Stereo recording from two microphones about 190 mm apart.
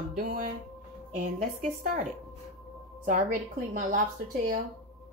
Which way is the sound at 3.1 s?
45° right (ahead or behind).